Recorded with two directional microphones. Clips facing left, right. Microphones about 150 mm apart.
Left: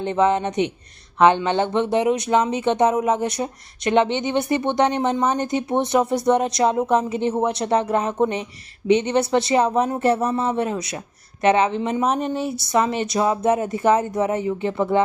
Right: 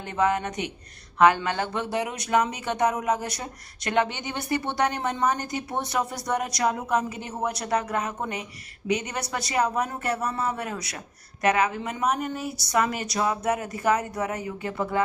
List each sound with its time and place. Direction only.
0.0 s speech: 25° left (ahead or behind)